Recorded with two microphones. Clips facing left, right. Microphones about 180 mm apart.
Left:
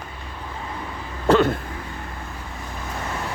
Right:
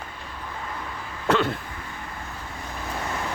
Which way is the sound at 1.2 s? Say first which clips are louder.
Left 6 dB; 35° left (ahead or behind).